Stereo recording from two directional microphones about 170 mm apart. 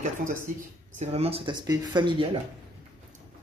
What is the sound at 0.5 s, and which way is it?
Speech, 50° right (ahead or behind).